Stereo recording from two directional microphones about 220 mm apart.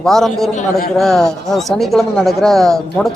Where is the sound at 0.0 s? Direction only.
Centre (ahead or behind).